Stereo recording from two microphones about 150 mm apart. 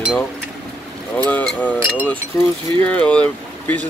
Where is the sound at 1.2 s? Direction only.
10° left (ahead or behind).